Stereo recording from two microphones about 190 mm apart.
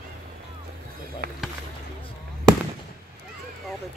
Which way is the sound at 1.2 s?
55° right (ahead or behind).